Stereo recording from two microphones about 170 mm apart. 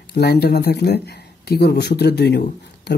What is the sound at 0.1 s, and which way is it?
Speech, 70° left (ahead or behind).